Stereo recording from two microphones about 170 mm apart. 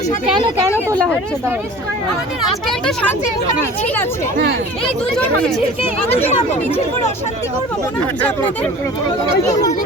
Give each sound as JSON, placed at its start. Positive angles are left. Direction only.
{"t": 2.5, "sound": "speech", "side_deg": 5}
{"t": 5.1, "sound": "speech", "side_deg": 0}
{"t": 6.1, "sound": "speech", "side_deg": 40}
{"t": 8.2, "sound": "speech", "side_deg": 10}